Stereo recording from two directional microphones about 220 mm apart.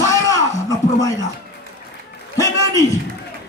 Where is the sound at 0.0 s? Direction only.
15° left (ahead or behind).